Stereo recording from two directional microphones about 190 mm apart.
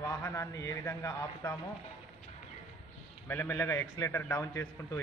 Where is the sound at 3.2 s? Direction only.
10° left (ahead or behind).